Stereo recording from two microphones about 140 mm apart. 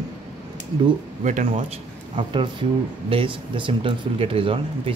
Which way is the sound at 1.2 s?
65° right (ahead or behind).